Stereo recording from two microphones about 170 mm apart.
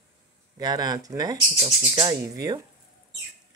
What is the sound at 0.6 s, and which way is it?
Speech, 25° right (ahead or behind).